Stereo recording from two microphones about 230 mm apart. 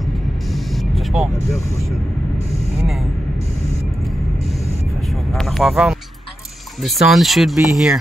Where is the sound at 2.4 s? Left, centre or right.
Right.